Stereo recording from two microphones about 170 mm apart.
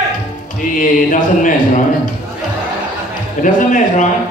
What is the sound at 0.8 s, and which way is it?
Speech, 50° left (ahead or behind).